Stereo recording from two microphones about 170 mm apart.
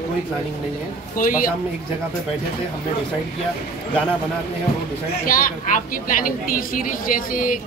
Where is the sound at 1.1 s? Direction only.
55° left (ahead or behind).